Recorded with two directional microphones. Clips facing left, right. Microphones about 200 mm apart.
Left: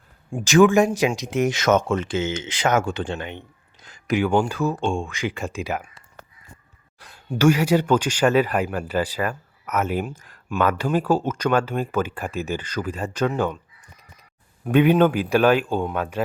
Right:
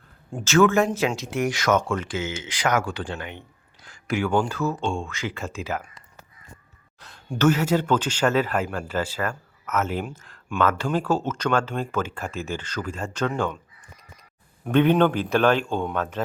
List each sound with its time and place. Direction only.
0.3 s speech: 10° left (ahead or behind)
7.0 s speech: 5° left (ahead or behind)
14.7 s speech: 10° left (ahead or behind)